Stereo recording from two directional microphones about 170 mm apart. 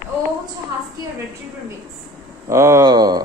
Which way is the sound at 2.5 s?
15° right (ahead or behind).